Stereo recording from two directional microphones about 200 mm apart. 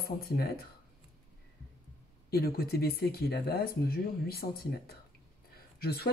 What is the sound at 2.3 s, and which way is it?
Speech, 50° left (ahead or behind).